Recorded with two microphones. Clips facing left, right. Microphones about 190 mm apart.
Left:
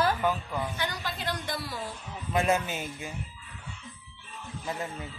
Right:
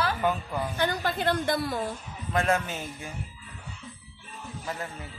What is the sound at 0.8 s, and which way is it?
A woman's voice, 50° right (ahead or behind).